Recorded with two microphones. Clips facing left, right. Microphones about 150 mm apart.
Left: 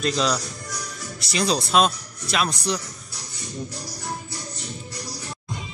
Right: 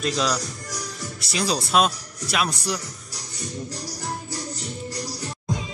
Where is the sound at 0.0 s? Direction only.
5° right (ahead or behind).